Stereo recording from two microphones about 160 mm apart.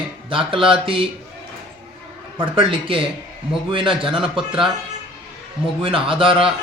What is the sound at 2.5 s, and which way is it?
A man's voice, 35° right (ahead or behind).